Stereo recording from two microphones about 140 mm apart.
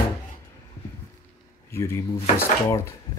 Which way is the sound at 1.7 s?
20° left (ahead or behind).